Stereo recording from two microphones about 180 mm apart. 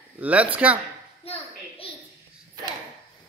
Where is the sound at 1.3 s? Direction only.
35° left (ahead or behind).